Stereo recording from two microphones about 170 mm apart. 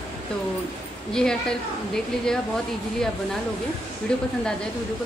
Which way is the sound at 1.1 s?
5° left (ahead or behind).